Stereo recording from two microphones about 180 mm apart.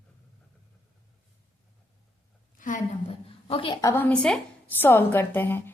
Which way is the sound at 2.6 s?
45° left (ahead or behind).